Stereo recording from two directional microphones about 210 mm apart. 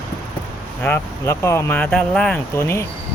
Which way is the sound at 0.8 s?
10° left (ahead or behind).